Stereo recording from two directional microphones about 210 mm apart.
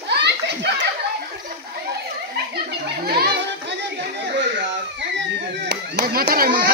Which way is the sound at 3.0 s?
45° right (ahead or behind).